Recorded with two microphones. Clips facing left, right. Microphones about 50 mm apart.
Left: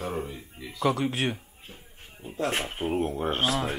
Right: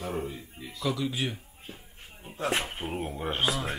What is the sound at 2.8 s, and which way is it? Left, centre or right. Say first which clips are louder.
Speech: left 6 dB; left.